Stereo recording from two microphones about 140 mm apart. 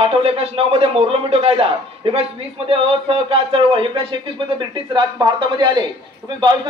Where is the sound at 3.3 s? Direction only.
40° right (ahead or behind).